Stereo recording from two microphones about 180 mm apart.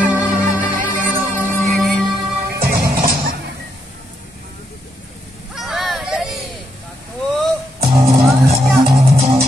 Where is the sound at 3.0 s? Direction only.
55° right (ahead or behind).